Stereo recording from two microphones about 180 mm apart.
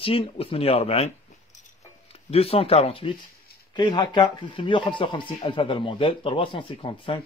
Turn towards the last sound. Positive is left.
turn(degrees=30)  # may be behind; listen again after turning